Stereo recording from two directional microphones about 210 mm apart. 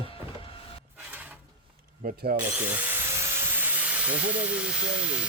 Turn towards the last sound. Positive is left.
turn(degrees=-5)  # may be behind; listen again after turning